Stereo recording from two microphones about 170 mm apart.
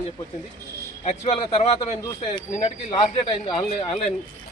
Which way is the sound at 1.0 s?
35° left (ahead or behind).